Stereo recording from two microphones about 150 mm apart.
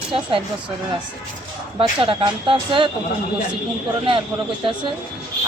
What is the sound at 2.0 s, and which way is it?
Speech, 35° right (ahead or behind).